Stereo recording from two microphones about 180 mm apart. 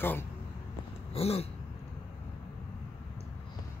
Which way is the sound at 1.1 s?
35° left (ahead or behind).